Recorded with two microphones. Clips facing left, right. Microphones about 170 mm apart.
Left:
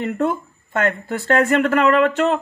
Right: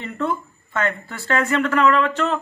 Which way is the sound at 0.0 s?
50° left (ahead or behind).